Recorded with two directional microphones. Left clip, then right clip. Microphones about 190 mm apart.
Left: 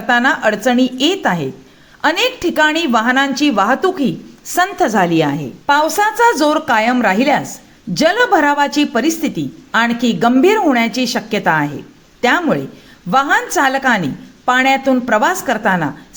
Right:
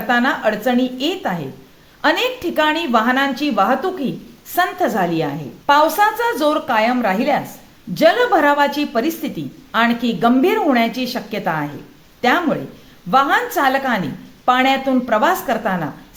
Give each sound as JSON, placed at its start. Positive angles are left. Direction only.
{"t": 0.1, "sound": "a woman's voice", "side_deg": 25}